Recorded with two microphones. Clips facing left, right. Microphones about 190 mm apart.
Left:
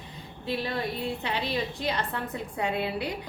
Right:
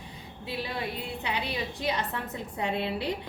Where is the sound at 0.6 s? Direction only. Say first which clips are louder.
Left 4 dB; 15° right (ahead or behind).